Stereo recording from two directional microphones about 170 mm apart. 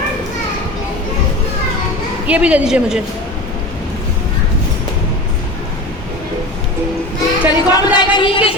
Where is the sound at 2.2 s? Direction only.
5° right (ahead or behind).